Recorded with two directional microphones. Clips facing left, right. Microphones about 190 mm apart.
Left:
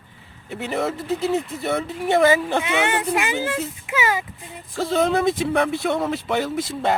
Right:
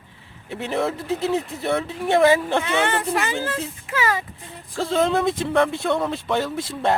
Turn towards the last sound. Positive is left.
turn(degrees=5)  # may be behind; listen again after turning